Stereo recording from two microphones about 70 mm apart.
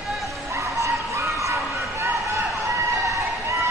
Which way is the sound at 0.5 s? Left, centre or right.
Right.